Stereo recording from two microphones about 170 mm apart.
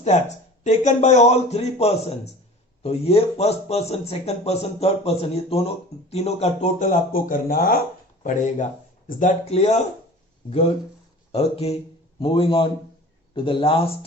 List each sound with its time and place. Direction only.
0.0 s speech: 40° left (ahead or behind); by 7.8 s 60° left (ahead or behind)
8.2 s speech: 45° left (ahead or behind)
11.3 s speech: 35° left (ahead or behind)